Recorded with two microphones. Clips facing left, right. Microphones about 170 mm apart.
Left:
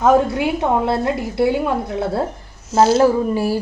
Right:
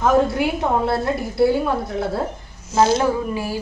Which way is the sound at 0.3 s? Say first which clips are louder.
Left 2 dB; 20° left (ahead or behind).